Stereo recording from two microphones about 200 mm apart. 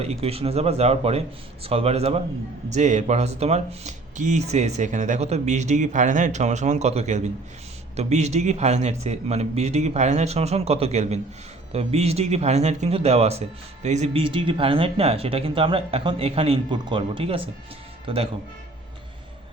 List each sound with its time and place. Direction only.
0.0 s speech: 30° right (ahead or behind)